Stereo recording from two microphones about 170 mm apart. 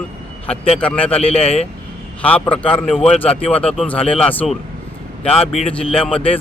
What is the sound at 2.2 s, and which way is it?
A man's voice, 10° left (ahead or behind).